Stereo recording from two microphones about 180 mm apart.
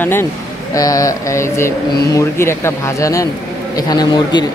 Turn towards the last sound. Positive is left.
turn(degrees=20)  # may be behind; listen again after turning